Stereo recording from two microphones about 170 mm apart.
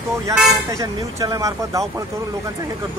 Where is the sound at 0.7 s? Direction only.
20° right (ahead or behind).